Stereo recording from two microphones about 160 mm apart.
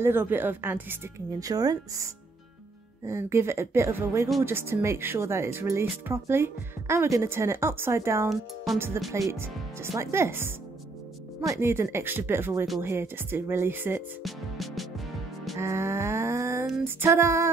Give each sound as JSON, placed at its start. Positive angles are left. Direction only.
{"t": 0.0, "sound": "speech", "side_deg": -15}
{"t": 1.4, "sound": "speech", "side_deg": -25}
{"t": 3.1, "sound": "speech", "side_deg": -15}
{"t": 14.2, "sound": "music", "side_deg": 0}
{"t": 15.5, "sound": "a sound", "side_deg": -15}
{"t": 16.8, "sound": "speech", "side_deg": -15}